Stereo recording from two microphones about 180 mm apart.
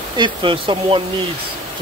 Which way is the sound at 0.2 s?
25° right (ahead or behind).